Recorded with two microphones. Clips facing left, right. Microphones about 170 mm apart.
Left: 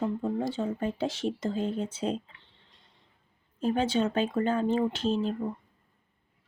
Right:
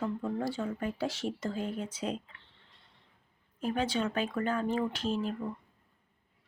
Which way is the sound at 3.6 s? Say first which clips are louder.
Left 5 dB; 30° left (ahead or behind).